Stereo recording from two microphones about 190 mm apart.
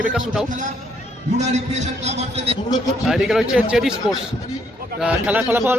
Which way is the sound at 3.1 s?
Centre (ahead or behind).